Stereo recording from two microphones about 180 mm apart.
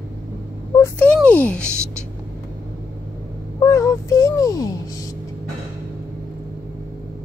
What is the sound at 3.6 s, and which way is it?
Speech, 15° left (ahead or behind).